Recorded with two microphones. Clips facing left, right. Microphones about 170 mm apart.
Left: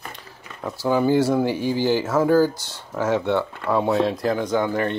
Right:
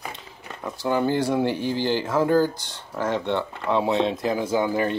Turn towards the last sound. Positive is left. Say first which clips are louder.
# left 1 dB
turn(degrees=-10)  # may be behind; listen again after turning